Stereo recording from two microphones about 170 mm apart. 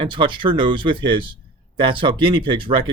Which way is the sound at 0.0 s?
30° right (ahead or behind).